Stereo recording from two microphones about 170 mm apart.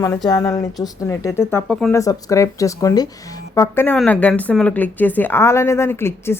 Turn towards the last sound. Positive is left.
turn(degrees=15)  # may be behind; listen again after turning